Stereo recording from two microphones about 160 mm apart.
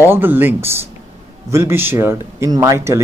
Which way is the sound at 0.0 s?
15° right (ahead or behind).